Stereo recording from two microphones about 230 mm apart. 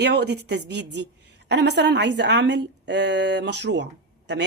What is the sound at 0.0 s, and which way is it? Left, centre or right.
Speech, right.